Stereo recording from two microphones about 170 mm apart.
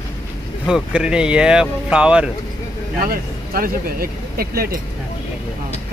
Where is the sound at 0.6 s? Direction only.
5° right (ahead or behind).